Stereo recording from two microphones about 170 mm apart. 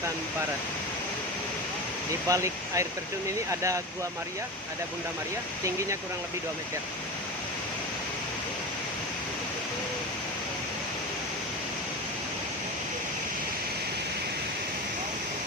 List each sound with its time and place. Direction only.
2.3 s speech: 20° right (ahead or behind)